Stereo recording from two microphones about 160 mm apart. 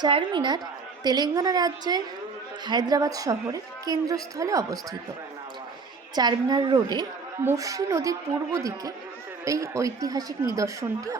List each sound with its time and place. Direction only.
0.0 s speech: 30° right (ahead or behind)
6.1 s speech: 25° right (ahead or behind)